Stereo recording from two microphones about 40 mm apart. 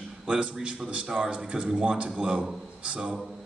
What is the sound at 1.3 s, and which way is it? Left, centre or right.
A man's voice, right.